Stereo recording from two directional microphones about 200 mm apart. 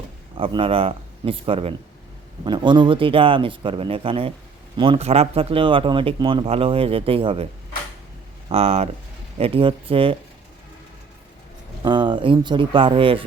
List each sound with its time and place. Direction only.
0.3 s speech: 25° right (ahead or behind)
8.4 s speech: 30° right (ahead or behind)
11.8 s speech: 25° right (ahead or behind)